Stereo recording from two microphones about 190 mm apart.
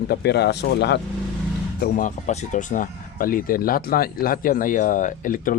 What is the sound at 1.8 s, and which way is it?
Speech, 45° left (ahead or behind).